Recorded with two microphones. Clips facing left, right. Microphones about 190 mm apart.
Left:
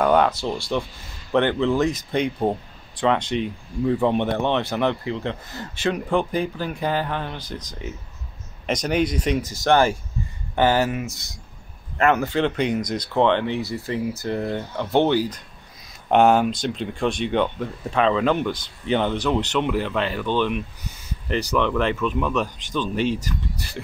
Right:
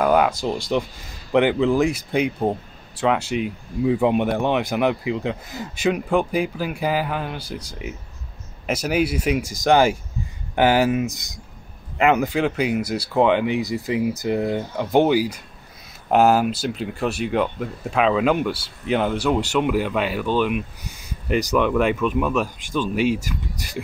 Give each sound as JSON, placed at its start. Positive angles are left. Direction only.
{"t": 0.0, "sound": "speech", "side_deg": -5}